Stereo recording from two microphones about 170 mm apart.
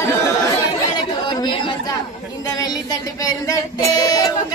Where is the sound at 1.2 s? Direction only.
25° left (ahead or behind).